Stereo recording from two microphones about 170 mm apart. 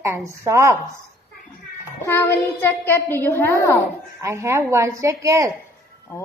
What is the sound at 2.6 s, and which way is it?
A woman's voice, 15° left (ahead or behind).